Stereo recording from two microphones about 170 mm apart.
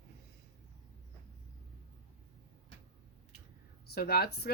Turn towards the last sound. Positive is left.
turn(degrees=65)  # may be behind; listen again after turning